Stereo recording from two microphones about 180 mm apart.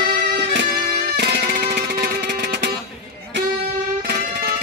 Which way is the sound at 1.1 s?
65° right (ahead or behind).